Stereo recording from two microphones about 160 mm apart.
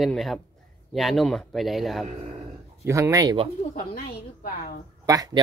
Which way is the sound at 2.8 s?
20° right (ahead or behind).